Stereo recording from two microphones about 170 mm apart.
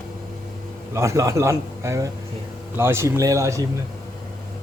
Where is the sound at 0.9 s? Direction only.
15° right (ahead or behind).